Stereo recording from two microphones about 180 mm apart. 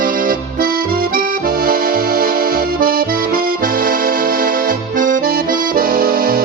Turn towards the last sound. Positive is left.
turn(degrees=-55)  # may be behind; listen again after turning